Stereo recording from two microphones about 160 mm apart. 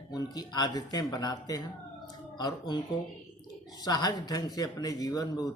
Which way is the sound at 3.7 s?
25° left (ahead or behind).